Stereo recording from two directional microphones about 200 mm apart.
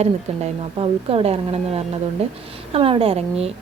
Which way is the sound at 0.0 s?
30° right (ahead or behind).